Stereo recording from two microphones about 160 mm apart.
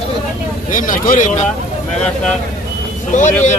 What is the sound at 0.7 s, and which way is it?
Speech, 55° left (ahead or behind).